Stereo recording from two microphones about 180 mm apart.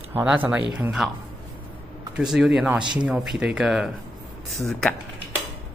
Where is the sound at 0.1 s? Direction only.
10° right (ahead or behind).